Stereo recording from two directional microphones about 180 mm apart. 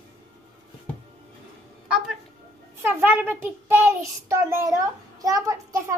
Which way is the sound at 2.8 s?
10° right (ahead or behind).